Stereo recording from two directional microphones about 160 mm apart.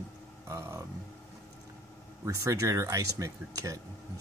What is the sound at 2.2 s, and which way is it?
Speech, 20° right (ahead or behind).